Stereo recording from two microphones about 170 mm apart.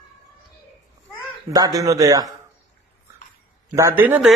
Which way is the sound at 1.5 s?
20° right (ahead or behind).